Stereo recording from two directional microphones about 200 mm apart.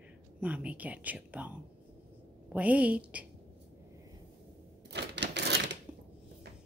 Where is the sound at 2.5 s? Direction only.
5° right (ahead or behind).